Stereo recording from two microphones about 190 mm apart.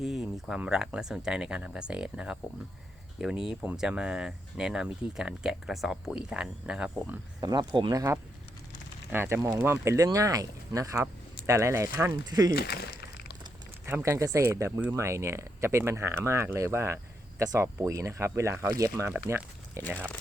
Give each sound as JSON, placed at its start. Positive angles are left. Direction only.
{"t": 0.0, "sound": "speech", "side_deg": 0}
{"t": 7.4, "sound": "speech", "side_deg": -25}
{"t": 12.5, "sound": "a sound", "side_deg": 55}
{"t": 13.8, "sound": "speech", "side_deg": -15}